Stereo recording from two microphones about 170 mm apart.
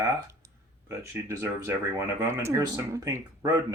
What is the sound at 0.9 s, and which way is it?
Speech, 15° right (ahead or behind).